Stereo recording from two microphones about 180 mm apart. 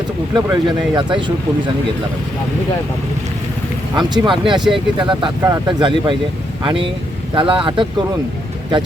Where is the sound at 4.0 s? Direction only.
25° right (ahead or behind).